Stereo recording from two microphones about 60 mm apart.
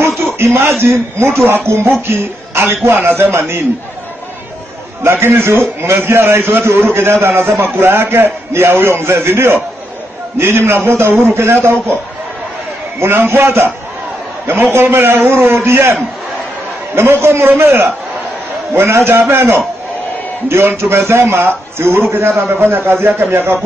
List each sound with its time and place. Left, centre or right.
0.2 s a man's voice: right
5.0 s a man's voice: right
13.0 s a man's voice: right